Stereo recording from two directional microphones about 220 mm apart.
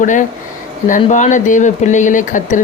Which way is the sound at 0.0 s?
35° left (ahead or behind).